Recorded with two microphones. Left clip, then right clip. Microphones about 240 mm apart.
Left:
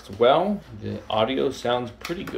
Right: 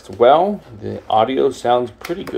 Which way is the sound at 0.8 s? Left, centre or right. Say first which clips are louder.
Right 8 dB; centre.